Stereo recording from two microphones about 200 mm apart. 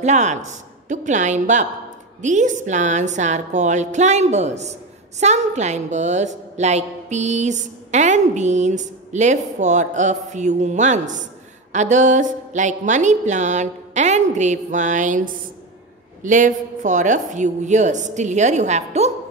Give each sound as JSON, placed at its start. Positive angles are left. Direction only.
{"t": 0.0, "sound": "a woman's voice", "side_deg": -35}